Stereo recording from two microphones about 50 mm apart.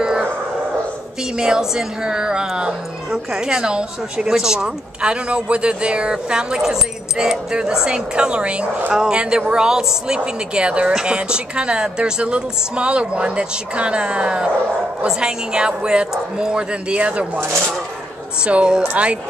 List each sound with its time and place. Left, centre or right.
1.4 s a woman's voice: centre
18.4 s speech: right